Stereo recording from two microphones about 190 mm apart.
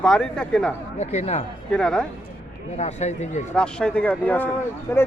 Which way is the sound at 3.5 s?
5° left (ahead or behind).